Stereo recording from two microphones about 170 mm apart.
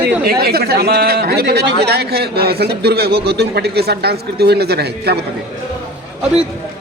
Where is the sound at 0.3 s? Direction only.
65° right (ahead or behind).